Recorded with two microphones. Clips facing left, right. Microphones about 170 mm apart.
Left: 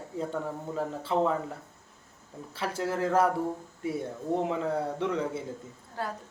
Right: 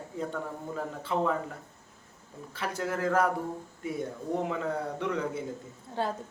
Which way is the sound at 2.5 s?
30° left (ahead or behind).